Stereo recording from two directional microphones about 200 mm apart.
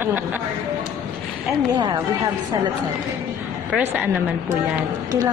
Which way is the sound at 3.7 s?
5° right (ahead or behind).